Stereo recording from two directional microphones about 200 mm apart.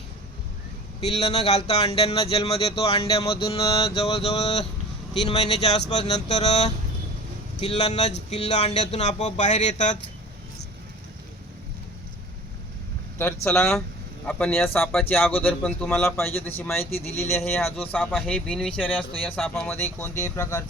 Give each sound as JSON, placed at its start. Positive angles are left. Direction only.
{"t": 1.0, "sound": "speech", "side_deg": 30}
{"t": 13.1, "sound": "speech", "side_deg": 10}